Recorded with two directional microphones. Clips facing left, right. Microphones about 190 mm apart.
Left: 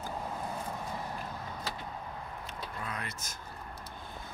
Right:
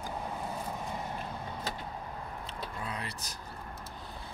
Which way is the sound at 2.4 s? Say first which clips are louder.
Right 1 dB; 30° right (ahead or behind).